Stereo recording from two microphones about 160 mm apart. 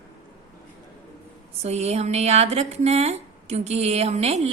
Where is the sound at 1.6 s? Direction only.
40° right (ahead or behind).